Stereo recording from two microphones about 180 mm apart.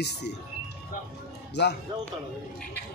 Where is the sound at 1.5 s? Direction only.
70° left (ahead or behind).